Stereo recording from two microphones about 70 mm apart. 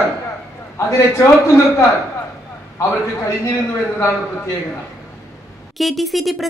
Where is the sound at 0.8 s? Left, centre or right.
Left.